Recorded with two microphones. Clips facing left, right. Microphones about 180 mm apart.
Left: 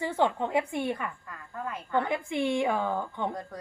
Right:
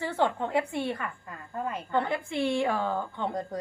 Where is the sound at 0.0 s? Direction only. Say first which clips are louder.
Left 1 dB; 15° left (ahead or behind).